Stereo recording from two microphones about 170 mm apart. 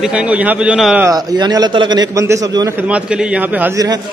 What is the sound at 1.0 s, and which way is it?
A man's voice, 20° right (ahead or behind).